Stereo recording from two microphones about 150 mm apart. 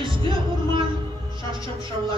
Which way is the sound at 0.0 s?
35° right (ahead or behind).